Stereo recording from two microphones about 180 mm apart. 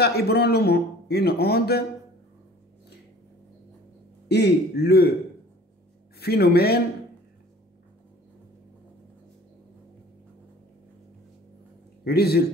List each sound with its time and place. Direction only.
0.0 s a man's voice: 60° left (ahead or behind)
4.3 s a man's voice: 65° left (ahead or behind)
6.1 s a man's voice: 60° left (ahead or behind)
12.0 s a man's voice: 60° left (ahead or behind)